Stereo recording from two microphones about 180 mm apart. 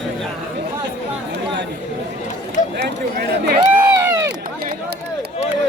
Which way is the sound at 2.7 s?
70° right (ahead or behind).